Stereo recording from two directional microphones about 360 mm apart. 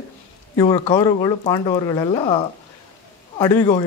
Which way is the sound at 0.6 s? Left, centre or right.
Centre.